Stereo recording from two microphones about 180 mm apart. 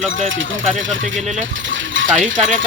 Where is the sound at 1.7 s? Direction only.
90° right.